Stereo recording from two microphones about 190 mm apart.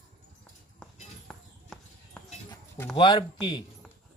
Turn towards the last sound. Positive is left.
turn(degrees=25)  # may be behind; listen again after turning